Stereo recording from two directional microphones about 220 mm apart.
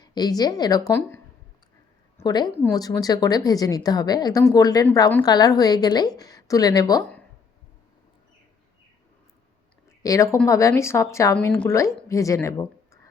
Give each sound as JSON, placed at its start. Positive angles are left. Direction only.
{"t": 0.0, "sound": "a woman's voice", "side_deg": 20}
{"t": 10.0, "sound": "a woman's voice", "side_deg": 15}